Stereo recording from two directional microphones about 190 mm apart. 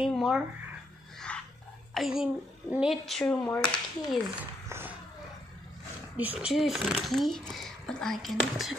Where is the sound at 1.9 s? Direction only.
Centre (ahead or behind).